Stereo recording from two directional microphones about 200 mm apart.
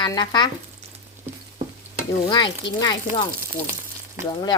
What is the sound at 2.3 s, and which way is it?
Speech, 20° left (ahead or behind).